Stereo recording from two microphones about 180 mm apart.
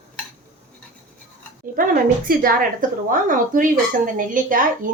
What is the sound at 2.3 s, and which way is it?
Speech, 50° right (ahead or behind).